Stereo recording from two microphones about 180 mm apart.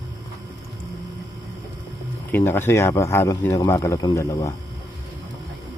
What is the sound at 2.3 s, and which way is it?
Speech, 10° left (ahead or behind).